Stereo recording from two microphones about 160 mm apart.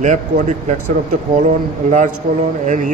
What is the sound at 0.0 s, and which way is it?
Speech, 50° right (ahead or behind).